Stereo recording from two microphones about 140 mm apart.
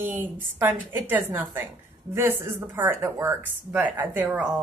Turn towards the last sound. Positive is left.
turn(degrees=-10)  # may be behind; listen again after turning